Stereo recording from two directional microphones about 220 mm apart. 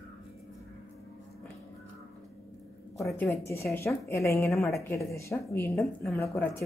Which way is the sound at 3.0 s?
10° left (ahead or behind).